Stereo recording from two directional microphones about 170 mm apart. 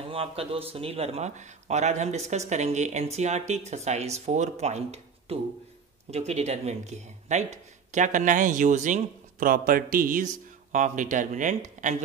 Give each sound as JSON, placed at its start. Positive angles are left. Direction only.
{"t": 0.1, "sound": "speech", "side_deg": -35}